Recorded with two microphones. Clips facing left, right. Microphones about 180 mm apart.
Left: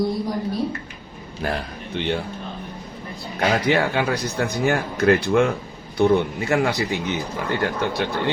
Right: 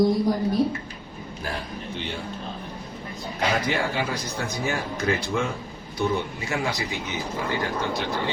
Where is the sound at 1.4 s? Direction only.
65° left (ahead or behind).